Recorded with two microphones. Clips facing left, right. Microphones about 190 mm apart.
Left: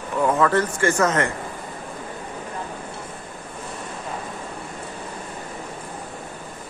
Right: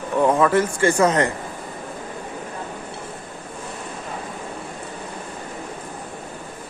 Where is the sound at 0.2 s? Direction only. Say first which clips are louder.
Right 2 dB; 15° right (ahead or behind).